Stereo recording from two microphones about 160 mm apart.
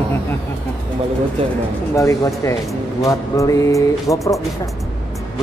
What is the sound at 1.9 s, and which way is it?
Speech, 20° left (ahead or behind).